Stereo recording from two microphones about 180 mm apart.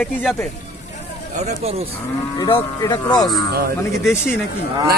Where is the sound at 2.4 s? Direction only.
25° left (ahead or behind).